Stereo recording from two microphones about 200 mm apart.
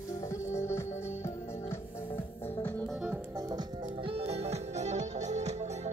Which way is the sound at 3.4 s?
20° right (ahead or behind).